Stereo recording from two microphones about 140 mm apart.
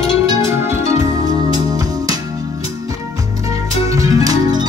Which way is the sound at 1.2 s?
25° right (ahead or behind).